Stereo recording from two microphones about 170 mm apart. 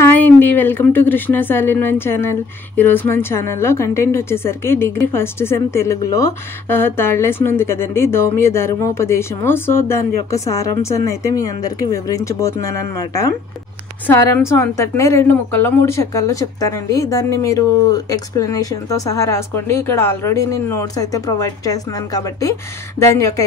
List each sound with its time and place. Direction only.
0.0 s a woman's voice: 10° left (ahead or behind)